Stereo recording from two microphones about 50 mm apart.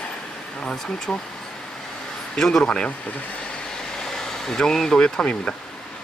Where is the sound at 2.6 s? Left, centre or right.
Left.